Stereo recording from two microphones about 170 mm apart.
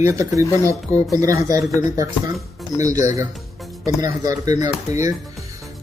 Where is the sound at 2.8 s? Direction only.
20° right (ahead or behind).